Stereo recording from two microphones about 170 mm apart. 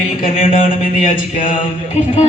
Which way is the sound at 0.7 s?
50° left (ahead or behind).